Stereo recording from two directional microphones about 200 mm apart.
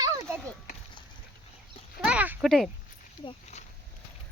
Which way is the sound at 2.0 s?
5° right (ahead or behind).